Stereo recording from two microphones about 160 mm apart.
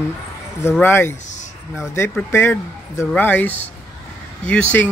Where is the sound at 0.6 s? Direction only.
15° left (ahead or behind).